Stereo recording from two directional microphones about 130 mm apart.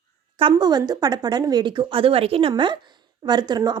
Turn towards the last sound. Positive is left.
turn(degrees=-35)  # may be behind; listen again after turning